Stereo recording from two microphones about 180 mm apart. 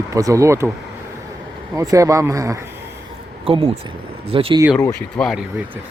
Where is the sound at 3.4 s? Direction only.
30° right (ahead or behind).